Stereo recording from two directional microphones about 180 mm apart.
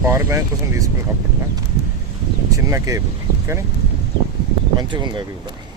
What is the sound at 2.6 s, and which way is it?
Speech, 20° right (ahead or behind).